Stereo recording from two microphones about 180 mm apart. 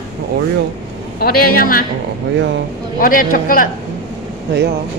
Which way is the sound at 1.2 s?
55° left (ahead or behind).